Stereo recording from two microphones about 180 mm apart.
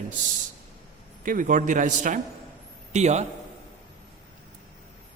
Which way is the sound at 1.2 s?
45° right (ahead or behind).